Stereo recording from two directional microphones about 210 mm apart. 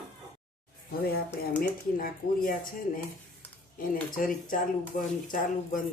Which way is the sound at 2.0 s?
40° left (ahead or behind).